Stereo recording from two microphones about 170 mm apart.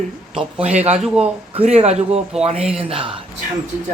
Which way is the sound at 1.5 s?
35° right (ahead or behind).